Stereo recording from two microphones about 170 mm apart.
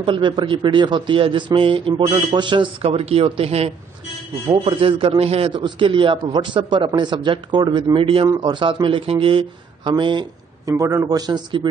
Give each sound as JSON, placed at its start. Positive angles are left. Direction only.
{"t": 0.0, "sound": "a man's voice", "side_deg": -30}